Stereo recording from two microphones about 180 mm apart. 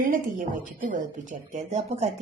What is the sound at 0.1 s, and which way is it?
A woman's voice, 45° right (ahead or behind).